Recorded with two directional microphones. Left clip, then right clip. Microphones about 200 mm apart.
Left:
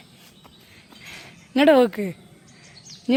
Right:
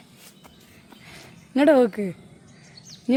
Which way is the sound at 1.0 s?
5° right (ahead or behind).